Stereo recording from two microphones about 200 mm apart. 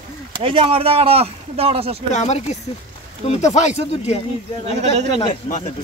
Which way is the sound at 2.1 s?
35° left (ahead or behind).